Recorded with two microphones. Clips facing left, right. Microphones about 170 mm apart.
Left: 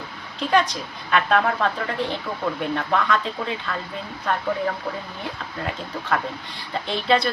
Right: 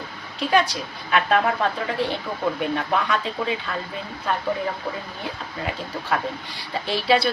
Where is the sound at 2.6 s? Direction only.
10° right (ahead or behind).